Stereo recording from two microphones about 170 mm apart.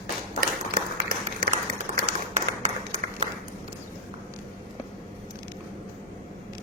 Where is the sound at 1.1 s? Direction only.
55° right (ahead or behind).